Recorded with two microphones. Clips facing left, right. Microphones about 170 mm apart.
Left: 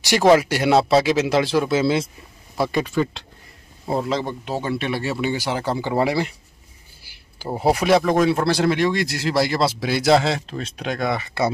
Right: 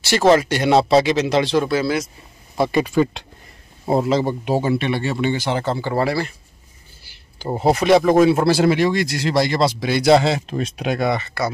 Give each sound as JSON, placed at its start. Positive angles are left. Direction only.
{"t": 0.0, "sound": "speech", "side_deg": 15}
{"t": 1.7, "sound": "speech", "side_deg": 25}
{"t": 2.6, "sound": "speech", "side_deg": 5}
{"t": 4.0, "sound": "speech", "side_deg": -5}
{"t": 4.7, "sound": "speech", "side_deg": 0}
{"t": 7.0, "sound": "a sound", "side_deg": 10}
{"t": 7.4, "sound": "speech", "side_deg": 5}
{"t": 10.4, "sound": "speech", "side_deg": -15}
{"t": 11.4, "sound": "speech", "side_deg": 20}